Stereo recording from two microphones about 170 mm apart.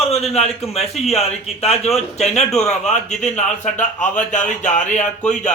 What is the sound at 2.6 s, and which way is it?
A man's voice, 45° left (ahead or behind).